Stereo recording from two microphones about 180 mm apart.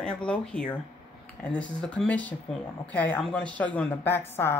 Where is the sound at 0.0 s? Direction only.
5° left (ahead or behind).